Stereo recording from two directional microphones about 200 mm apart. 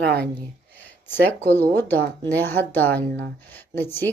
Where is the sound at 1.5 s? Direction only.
10° left (ahead or behind).